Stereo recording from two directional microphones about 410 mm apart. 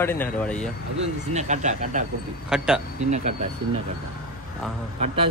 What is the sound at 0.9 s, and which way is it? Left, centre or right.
Speech, centre.